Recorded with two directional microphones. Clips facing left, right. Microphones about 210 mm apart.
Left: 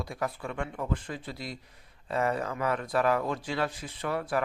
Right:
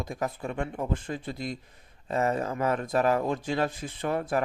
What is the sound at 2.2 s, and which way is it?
Speech, 40° right (ahead or behind).